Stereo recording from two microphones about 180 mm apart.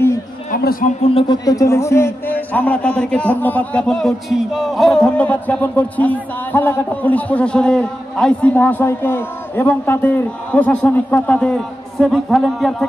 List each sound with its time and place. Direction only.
0.5 s a man's voice: 55° left (ahead or behind)
1.0 s a man's voice: 30° left (ahead or behind); by 12.8 s centre (ahead or behind)